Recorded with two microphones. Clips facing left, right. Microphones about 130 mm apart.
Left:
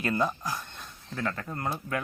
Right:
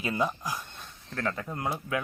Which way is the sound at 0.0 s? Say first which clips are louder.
Left 1 dB; 10° right (ahead or behind).